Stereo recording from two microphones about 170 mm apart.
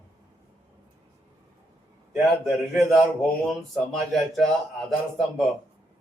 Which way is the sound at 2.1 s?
Centre (ahead or behind).